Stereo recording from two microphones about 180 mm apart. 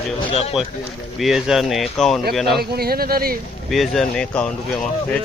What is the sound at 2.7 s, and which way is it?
Speech, 60° right (ahead or behind).